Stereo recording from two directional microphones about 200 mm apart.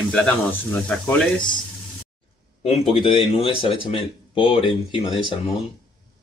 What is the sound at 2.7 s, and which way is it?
Speech, 25° left (ahead or behind).